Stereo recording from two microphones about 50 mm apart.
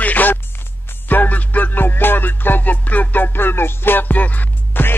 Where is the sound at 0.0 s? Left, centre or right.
Left.